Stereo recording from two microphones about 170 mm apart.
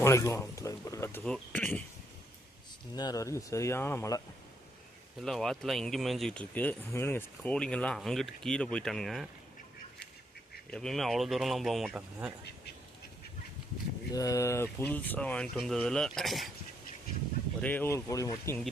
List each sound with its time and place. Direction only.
0.0 s speech: 15° left (ahead or behind)
2.9 s speech: 20° left (ahead or behind)
5.2 s speech: 5° left (ahead or behind)
10.7 s speech: 5° left (ahead or behind)
14.1 s speech: 20° left (ahead or behind); by 16.5 s centre (ahead or behind)
17.6 s speech: 10° left (ahead or behind)